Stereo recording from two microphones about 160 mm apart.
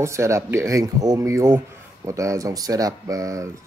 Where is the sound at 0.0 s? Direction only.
15° right (ahead or behind).